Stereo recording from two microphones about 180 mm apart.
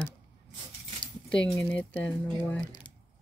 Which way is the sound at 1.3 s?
5° left (ahead or behind).